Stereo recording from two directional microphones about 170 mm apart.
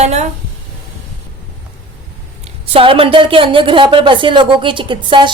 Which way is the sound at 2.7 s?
30° right (ahead or behind).